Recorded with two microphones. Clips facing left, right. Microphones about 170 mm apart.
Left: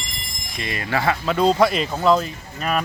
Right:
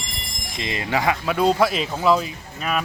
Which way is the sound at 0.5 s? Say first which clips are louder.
Even; 20° right (ahead or behind).